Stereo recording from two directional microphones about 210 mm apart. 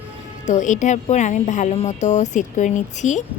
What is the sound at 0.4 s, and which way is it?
Speech, 35° left (ahead or behind).